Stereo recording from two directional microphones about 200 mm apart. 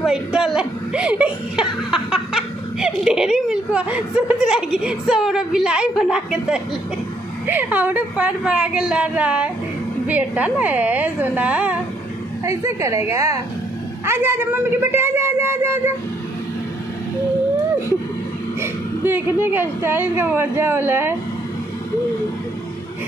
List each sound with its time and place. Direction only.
0.0 s a woman's voice: 5° right (ahead or behind)
18.6 s a sound: 10° right (ahead or behind)
19.4 s a woman's voice: 10° right (ahead or behind)